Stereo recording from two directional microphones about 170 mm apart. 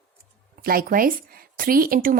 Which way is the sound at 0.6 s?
60° right (ahead or behind).